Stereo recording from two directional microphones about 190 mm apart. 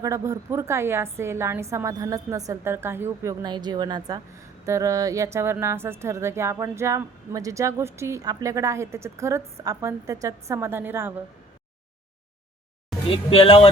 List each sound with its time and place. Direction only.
0.0 s a woman's voice: 15° right (ahead or behind)
13.1 s speech: 30° left (ahead or behind)